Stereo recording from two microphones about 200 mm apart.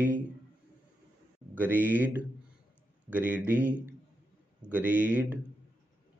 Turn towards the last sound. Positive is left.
turn(degrees=-10)  # may be behind; listen again after turning